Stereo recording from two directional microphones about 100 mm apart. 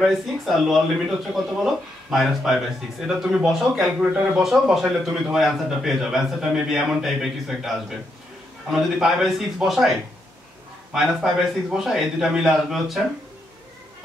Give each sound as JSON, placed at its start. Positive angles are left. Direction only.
{"t": 0.0, "sound": "speech", "side_deg": 0}